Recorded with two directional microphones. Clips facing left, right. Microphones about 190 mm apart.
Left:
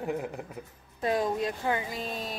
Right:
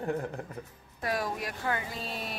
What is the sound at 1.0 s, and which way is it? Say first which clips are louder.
Speech: left 5 dB; 20° left (ahead or behind).